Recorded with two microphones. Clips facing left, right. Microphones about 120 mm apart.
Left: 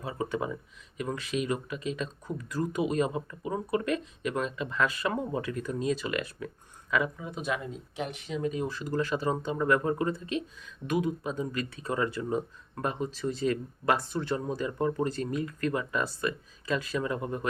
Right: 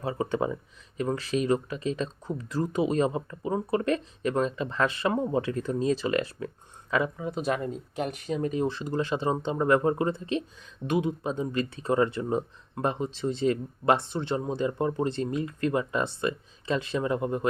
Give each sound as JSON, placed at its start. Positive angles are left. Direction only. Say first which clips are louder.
{"t": 0.0, "sound": "speech", "louder": "right 4 dB", "side_deg": -30}
{"t": 8.6, "sound": "speech", "louder": "right 2 dB", "side_deg": -25}